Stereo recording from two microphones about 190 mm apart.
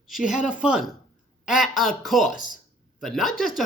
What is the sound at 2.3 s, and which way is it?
Speech, 45° left (ahead or behind).